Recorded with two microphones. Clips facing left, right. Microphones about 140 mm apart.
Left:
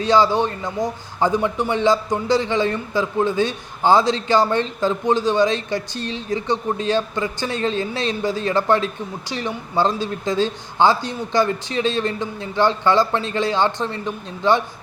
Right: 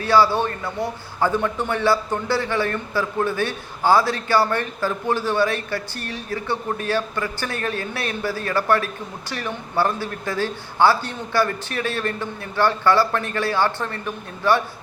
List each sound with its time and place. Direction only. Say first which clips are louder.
0.0 s a man's voice: left 1 dB; 20° left (ahead or behind)